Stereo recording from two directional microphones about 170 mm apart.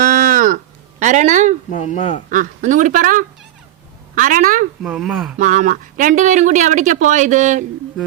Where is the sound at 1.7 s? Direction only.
45° left (ahead or behind).